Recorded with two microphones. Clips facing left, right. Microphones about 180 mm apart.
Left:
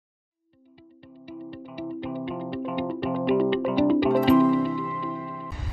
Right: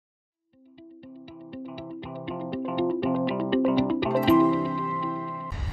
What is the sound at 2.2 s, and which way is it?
Music, centre (ahead or behind).